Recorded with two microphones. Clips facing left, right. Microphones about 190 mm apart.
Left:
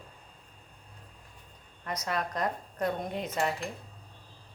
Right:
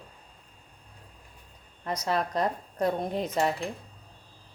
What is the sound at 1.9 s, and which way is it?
A woman's voice, 30° right (ahead or behind).